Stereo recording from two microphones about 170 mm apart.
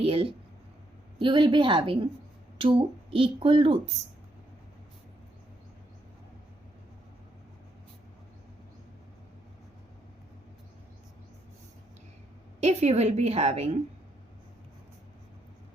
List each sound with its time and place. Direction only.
0.0 s a sound: 35° right (ahead or behind)
1.2 s a woman's voice: 30° right (ahead or behind)
12.5 s a woman's voice: 40° right (ahead or behind)